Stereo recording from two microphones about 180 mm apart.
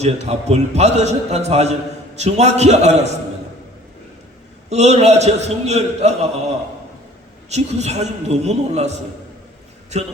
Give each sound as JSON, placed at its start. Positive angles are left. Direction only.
{"t": 0.0, "sound": "a man's voice", "side_deg": -35}
{"t": 4.7, "sound": "a man's voice", "side_deg": -40}
{"t": 7.5, "sound": "a man's voice", "side_deg": -40}